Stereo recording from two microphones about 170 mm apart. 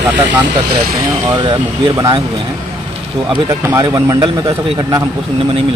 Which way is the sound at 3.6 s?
15° right (ahead or behind).